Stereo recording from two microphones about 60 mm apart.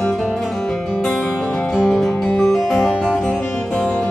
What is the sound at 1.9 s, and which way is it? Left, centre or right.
Music, centre.